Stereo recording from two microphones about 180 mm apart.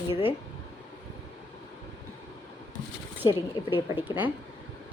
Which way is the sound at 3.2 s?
25° left (ahead or behind).